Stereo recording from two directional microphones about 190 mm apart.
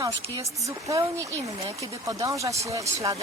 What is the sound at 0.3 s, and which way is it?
Speech, 15° right (ahead or behind).